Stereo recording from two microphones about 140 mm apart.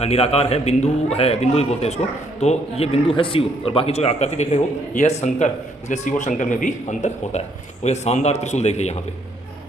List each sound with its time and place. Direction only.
0.0 s a man's voice: 45° left (ahead or behind)